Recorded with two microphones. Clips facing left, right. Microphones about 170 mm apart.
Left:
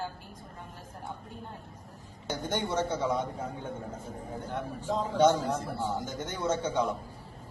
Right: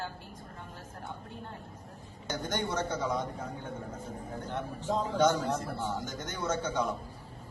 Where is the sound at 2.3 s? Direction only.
25° left (ahead or behind).